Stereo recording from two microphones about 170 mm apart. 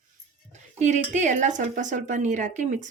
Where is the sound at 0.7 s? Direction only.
45° right (ahead or behind).